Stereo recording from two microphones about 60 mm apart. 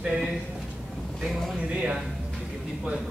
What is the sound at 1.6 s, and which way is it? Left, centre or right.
Speech, right.